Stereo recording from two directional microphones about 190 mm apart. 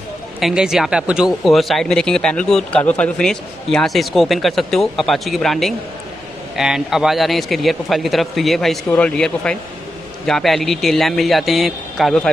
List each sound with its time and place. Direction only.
0.4 s speech: centre (ahead or behind)